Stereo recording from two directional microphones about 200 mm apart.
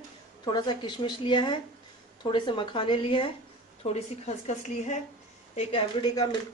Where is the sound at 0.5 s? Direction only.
20° left (ahead or behind).